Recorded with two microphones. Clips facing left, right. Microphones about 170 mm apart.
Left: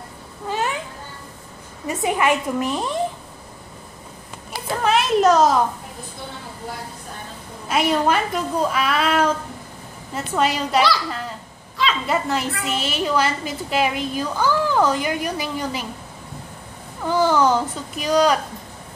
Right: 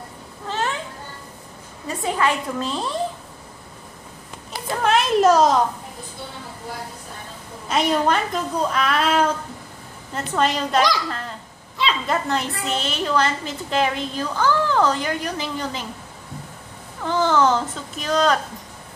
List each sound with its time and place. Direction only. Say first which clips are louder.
0.5 s children playing: left 1 dB; 15° left (ahead or behind)
1.9 s a woman's voice: left 2 dB; 20° left (ahead or behind)
4.8 s a sound: even; centre (ahead or behind)
7.6 s a woman's voice: left 1 dB; 5° left (ahead or behind)
12.1 s a woman's voice: left 1 dB; 5° left (ahead or behind)
17.0 s a woman's voice: left 1 dB; 10° left (ahead or behind)